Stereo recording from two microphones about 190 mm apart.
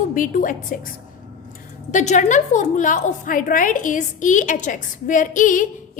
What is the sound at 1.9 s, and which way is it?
A woman's voice, 40° left (ahead or behind).